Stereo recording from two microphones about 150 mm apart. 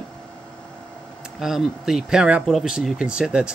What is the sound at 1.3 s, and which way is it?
Speech, centre (ahead or behind).